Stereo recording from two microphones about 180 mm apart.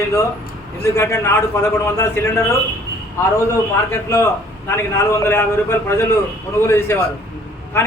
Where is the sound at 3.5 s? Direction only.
15° left (ahead or behind).